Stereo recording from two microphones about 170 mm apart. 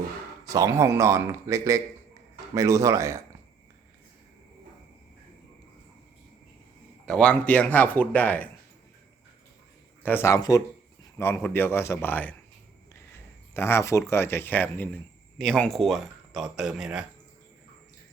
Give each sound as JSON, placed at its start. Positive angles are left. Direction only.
{"t": 0.4, "sound": "speech", "side_deg": -20}
{"t": 7.0, "sound": "speech", "side_deg": 5}
{"t": 10.0, "sound": "speech", "side_deg": 10}
{"t": 13.5, "sound": "speech", "side_deg": 15}